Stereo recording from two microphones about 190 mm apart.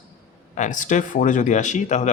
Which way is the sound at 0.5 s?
40° left (ahead or behind).